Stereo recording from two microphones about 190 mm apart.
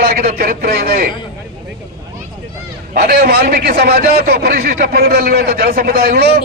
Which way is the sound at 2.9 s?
50° right (ahead or behind).